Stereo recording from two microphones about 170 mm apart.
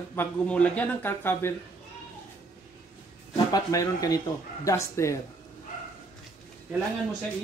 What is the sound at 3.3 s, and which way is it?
Speech, 20° left (ahead or behind).